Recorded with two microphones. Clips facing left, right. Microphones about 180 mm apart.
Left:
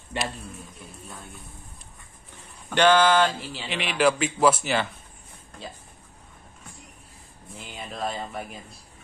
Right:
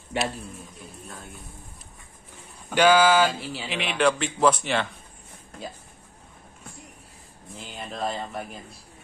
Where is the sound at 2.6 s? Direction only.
10° right (ahead or behind).